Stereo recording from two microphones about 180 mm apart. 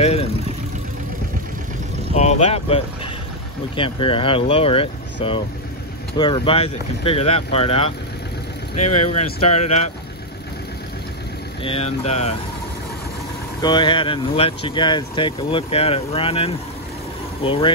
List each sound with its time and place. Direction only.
0.0 s speech: 35° left (ahead or behind)
2.1 s speech: 35° left (ahead or behind)
11.6 s speech: 35° left (ahead or behind)
13.6 s speech: 25° left (ahead or behind)